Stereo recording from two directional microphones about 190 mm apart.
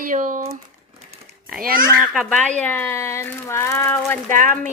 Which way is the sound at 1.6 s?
50° right (ahead or behind).